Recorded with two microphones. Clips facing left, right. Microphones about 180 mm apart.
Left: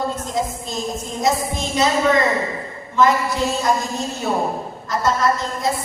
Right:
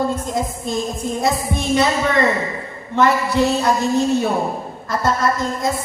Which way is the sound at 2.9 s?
65° right (ahead or behind).